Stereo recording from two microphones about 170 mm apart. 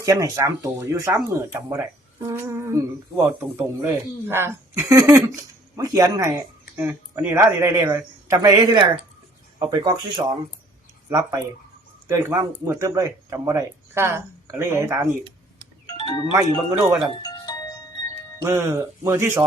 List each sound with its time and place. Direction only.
0.0 s speech: 20° right (ahead or behind)
15.9 s music: 25° left (ahead or behind)
16.3 s speech: 20° right (ahead or behind)
17.2 s music: 20° left (ahead or behind)
18.4 s speech: 15° right (ahead or behind)